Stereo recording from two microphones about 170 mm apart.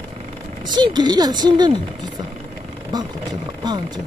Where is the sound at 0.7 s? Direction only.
25° right (ahead or behind).